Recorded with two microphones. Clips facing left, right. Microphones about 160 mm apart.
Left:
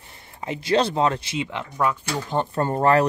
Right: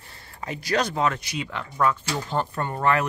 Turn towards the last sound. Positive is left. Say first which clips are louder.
# left 5 dB
turn(degrees=35)  # may be behind; listen again after turning